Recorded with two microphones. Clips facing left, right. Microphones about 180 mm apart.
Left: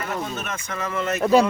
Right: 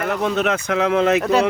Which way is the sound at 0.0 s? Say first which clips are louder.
Right 9 dB; 75° right (ahead or behind).